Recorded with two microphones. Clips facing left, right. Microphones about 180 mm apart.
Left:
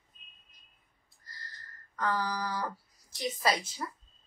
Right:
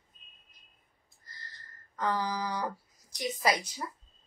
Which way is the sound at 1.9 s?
20° right (ahead or behind).